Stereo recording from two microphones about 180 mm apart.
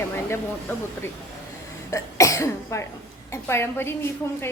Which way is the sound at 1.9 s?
15° left (ahead or behind).